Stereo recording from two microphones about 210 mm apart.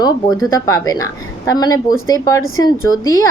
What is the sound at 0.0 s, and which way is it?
A woman's voice, 15° left (ahead or behind).